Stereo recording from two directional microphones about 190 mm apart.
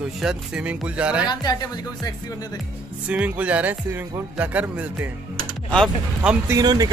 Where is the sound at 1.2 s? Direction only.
20° left (ahead or behind).